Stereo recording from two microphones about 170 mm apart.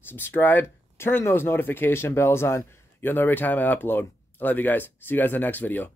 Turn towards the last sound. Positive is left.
turn(degrees=10)  # may be behind; listen again after turning